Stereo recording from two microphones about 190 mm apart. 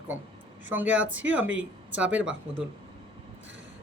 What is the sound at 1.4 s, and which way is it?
Speech, 90° right.